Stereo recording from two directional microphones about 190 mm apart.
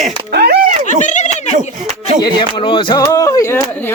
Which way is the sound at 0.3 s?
55° right (ahead or behind).